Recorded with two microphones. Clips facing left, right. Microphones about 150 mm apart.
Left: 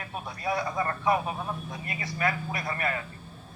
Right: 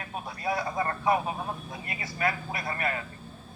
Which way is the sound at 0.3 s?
30° right (ahead or behind).